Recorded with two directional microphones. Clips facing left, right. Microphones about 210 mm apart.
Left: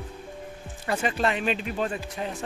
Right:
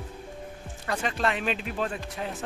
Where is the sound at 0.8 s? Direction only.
5° left (ahead or behind).